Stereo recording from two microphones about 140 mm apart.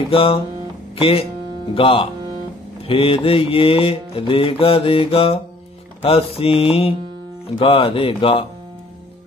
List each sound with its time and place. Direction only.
0.1 s mantra: 40° left (ahead or behind)
0.9 s speech: 40° left (ahead or behind)
1.7 s mantra: 40° left (ahead or behind)
6.0 s music: 45° left (ahead or behind)
7.5 s mantra: 40° left (ahead or behind)